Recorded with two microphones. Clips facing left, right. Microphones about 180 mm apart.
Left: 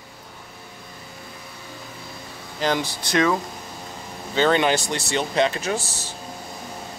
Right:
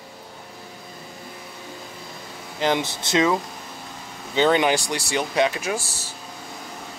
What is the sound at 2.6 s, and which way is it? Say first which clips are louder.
Speech: right 1 dB; 20° right (ahead or behind).